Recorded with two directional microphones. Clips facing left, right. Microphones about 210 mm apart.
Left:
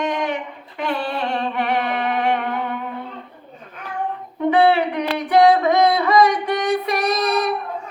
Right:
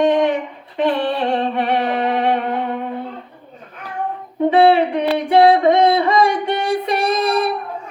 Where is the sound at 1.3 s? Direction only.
30° right (ahead or behind).